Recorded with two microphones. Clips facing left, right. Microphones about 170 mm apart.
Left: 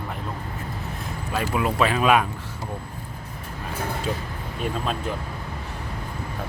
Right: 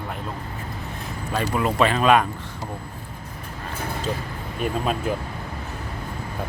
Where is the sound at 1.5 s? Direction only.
5° left (ahead or behind).